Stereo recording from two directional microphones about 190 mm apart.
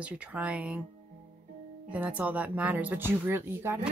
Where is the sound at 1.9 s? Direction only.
5° right (ahead or behind).